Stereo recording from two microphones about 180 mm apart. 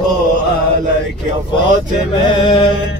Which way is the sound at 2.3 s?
25° left (ahead or behind).